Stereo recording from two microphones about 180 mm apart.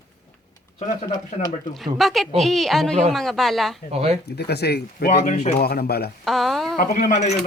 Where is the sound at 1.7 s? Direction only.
Centre (ahead or behind).